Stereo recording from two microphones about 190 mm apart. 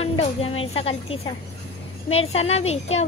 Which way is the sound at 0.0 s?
30° left (ahead or behind).